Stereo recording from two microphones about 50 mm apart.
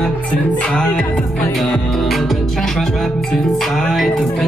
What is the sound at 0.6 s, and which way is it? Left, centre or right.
Music, centre.